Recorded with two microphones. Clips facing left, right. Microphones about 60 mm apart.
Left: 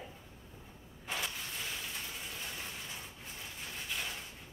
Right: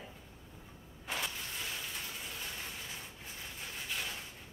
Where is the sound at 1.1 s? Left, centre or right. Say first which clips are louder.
Even; centre.